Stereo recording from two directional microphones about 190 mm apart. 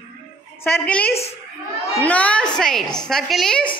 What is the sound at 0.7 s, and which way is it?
A woman's voice, 5° left (ahead or behind).